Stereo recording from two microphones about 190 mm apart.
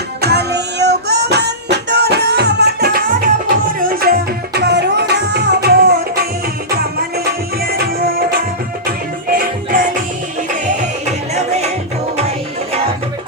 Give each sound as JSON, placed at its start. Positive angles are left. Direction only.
{"t": 0.2, "sound": "music", "side_deg": -60}
{"t": 7.3, "sound": "music", "side_deg": -55}